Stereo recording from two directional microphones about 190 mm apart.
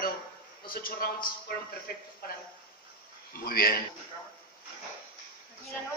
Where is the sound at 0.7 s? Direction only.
50° left (ahead or behind).